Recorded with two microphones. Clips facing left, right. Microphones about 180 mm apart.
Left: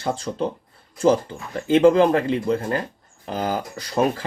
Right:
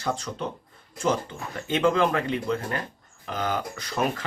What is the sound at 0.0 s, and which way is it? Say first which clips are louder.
Speech: left 5 dB; 30° left (ahead or behind).